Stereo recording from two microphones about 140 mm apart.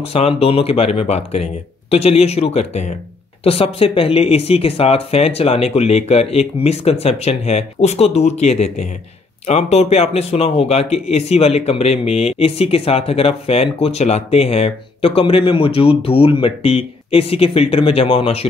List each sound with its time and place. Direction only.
0.0 s speech: 45° left (ahead or behind)